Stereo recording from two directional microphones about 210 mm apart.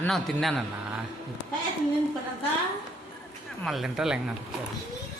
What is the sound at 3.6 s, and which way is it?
Speech, centre (ahead or behind).